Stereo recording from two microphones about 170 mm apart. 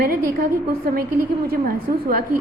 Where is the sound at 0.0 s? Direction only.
60° right (ahead or behind).